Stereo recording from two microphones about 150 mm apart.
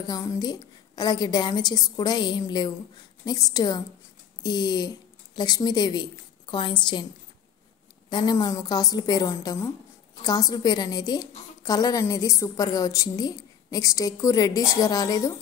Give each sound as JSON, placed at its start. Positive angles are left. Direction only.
{"t": 0.0, "sound": "a woman's voice", "side_deg": 25}
{"t": 8.1, "sound": "a woman's voice", "side_deg": 30}